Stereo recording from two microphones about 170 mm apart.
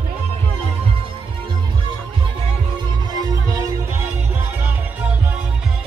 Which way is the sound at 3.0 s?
25° right (ahead or behind).